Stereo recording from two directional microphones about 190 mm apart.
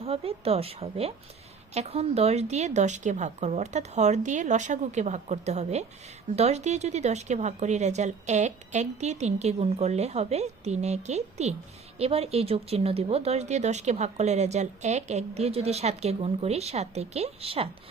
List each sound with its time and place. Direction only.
0.0 s speech: 30° right (ahead or behind)